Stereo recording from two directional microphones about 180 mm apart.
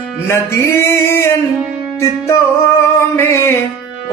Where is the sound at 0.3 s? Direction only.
15° left (ahead or behind).